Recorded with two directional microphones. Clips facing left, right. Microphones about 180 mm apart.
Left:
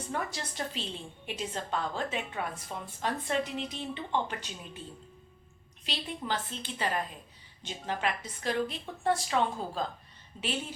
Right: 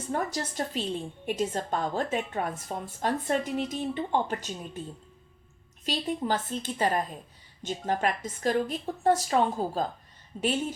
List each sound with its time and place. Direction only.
0.1 s a woman's voice: 45° right (ahead or behind)
5.8 s a woman's voice: 45° right (ahead or behind)